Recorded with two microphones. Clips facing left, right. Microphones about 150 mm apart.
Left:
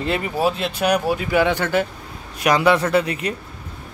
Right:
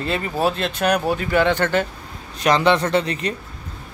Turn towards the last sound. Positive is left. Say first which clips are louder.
# left 1 dB
turn(degrees=10)  # may be behind; listen again after turning